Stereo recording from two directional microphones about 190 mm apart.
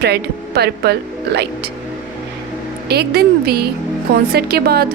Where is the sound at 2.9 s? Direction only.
55° right (ahead or behind).